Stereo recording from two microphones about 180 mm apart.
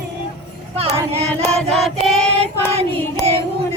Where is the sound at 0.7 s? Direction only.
35° right (ahead or behind).